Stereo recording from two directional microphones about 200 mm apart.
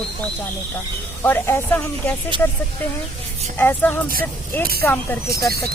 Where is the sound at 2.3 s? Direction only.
25° right (ahead or behind).